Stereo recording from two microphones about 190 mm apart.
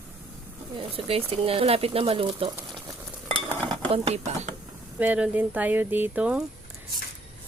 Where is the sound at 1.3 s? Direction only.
30° right (ahead or behind).